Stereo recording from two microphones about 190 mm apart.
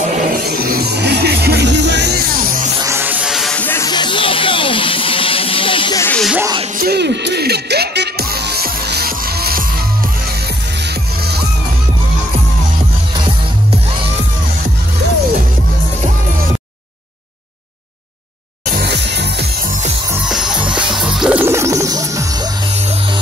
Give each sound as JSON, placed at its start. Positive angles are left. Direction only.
{"t": 0.5, "sound": "music", "side_deg": -50}
{"t": 2.8, "sound": "music", "side_deg": -15}
{"t": 6.0, "sound": "music", "side_deg": 5}
{"t": 6.8, "sound": "music", "side_deg": -60}
{"t": 18.7, "sound": "music", "side_deg": -60}
{"t": 20.2, "sound": "music", "side_deg": -5}